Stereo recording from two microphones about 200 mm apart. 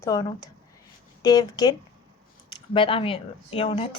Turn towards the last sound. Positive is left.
turn(degrees=30)  # may be behind; listen again after turning